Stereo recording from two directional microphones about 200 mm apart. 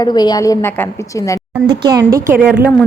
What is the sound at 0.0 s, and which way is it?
A woman's voice, 20° left (ahead or behind).